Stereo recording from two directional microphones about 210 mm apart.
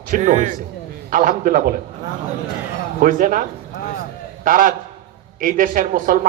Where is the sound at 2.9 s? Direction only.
40° right (ahead or behind).